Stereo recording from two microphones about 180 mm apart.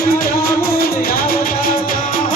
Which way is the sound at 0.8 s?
55° left (ahead or behind).